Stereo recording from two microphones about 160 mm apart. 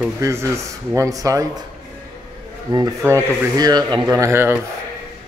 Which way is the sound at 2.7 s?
25° right (ahead or behind).